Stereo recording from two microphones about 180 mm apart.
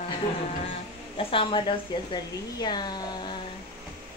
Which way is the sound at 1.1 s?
30° left (ahead or behind).